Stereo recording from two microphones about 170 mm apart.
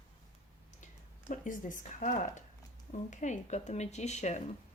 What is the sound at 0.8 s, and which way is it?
A woman's voice, 45° left (ahead or behind).